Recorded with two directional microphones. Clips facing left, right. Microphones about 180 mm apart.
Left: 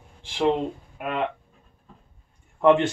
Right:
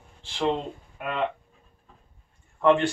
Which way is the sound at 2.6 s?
20° left (ahead or behind).